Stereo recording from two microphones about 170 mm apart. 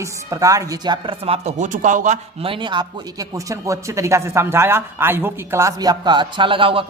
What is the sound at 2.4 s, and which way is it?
Speech, 30° right (ahead or behind).